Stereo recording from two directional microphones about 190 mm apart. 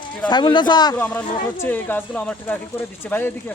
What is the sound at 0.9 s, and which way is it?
Speech, 10° left (ahead or behind).